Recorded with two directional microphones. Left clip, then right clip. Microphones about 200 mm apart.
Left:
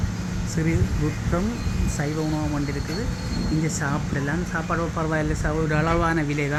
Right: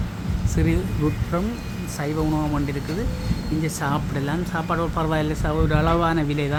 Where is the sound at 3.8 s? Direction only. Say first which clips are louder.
Right 2 dB; centre (ahead or behind).